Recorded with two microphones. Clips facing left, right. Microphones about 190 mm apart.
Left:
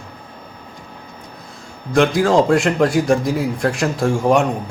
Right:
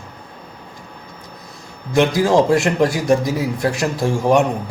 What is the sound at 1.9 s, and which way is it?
Speech, 5° right (ahead or behind).